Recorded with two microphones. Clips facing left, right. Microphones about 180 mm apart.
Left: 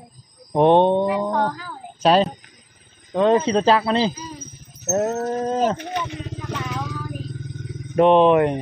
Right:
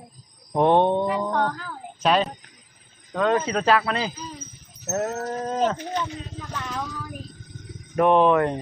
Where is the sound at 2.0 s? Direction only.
30° left (ahead or behind).